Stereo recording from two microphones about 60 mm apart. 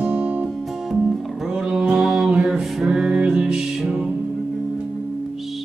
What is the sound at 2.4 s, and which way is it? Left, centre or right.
Music, centre.